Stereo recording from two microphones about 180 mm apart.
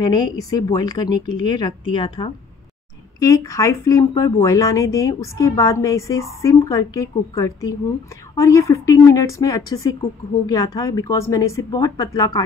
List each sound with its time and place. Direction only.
0.0 s a woman's voice: 20° left (ahead or behind)